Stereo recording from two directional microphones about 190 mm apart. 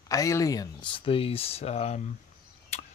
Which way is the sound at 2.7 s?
35° left (ahead or behind).